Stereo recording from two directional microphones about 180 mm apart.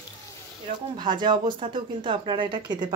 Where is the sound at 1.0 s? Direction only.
25° right (ahead or behind).